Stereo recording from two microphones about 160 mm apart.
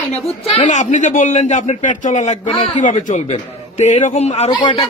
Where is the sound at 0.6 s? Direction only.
50° left (ahead or behind).